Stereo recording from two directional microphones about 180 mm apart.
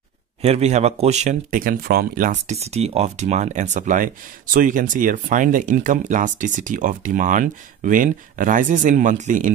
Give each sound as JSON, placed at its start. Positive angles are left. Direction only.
{"t": 0.4, "sound": "speech", "side_deg": -35}